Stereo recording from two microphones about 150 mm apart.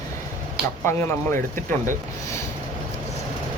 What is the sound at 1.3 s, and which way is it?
Speech, 60° right (ahead or behind).